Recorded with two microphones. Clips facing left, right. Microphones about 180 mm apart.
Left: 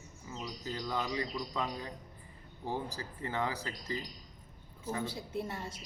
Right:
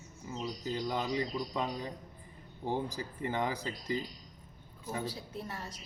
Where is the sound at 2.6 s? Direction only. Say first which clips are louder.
Right 3 dB; 15° right (ahead or behind).